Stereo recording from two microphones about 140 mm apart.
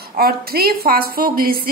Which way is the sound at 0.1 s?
90° right.